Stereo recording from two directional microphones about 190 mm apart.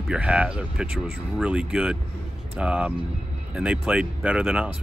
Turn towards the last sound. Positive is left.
turn(degrees=-5)  # may be behind; listen again after turning